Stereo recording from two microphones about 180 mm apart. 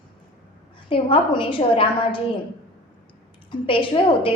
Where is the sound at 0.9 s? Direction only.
30° left (ahead or behind).